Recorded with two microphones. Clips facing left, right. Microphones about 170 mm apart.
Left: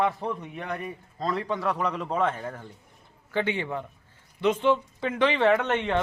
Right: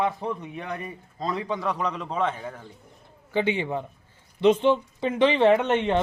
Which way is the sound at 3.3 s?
15° right (ahead or behind).